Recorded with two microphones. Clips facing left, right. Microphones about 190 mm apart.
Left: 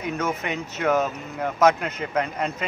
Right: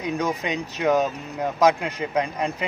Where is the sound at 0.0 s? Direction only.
15° right (ahead or behind).